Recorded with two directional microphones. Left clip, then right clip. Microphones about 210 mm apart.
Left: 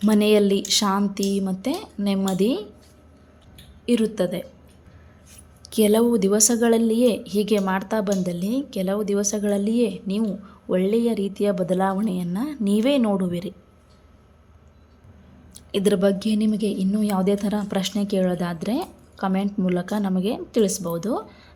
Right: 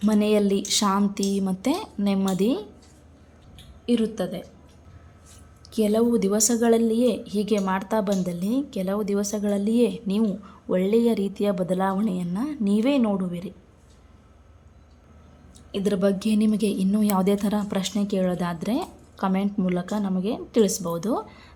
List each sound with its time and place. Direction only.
0.0 s a woman's voice: 10° left (ahead or behind)
3.8 s speech: 20° left (ahead or behind)
5.6 s a woman's voice: 15° left (ahead or behind)
15.5 s a woman's voice: 15° left (ahead or behind)